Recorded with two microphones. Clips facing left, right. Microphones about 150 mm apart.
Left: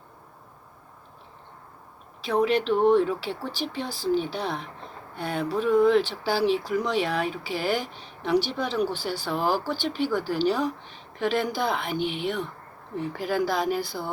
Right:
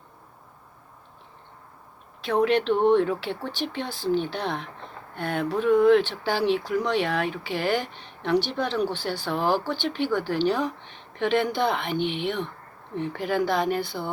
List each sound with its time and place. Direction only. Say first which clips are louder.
2.2 s speech: right 1 dB; 5° left (ahead or behind)
3.8 s speech: even; 40° left (ahead or behind)
4.2 s a woman's voice: right 1 dB; 5° left (ahead or behind)